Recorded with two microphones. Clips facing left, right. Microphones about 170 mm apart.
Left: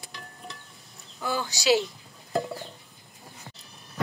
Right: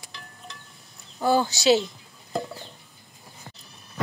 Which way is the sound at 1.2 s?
30° right (ahead or behind).